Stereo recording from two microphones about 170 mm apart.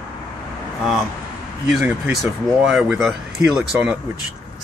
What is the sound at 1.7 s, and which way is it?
Speech, 5° right (ahead or behind).